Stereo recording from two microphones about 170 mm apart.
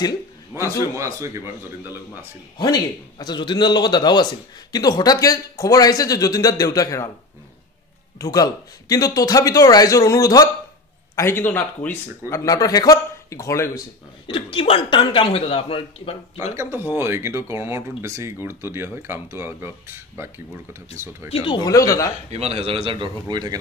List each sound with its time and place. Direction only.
0.9 s speech: 15° right (ahead or behind)
2.6 s a man's voice: 25° left (ahead or behind)
8.2 s a man's voice: 20° left (ahead or behind)
14.2 s a man's voice: 30° left (ahead or behind)
16.5 s speech: 10° right (ahead or behind)
21.3 s a man's voice: 30° left (ahead or behind)
22.3 s speech: 35° right (ahead or behind)